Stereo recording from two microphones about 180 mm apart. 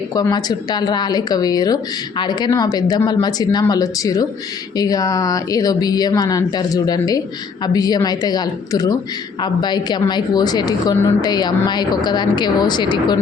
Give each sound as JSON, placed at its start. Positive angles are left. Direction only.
{"t": 0.1, "sound": "a woman's voice", "side_deg": 20}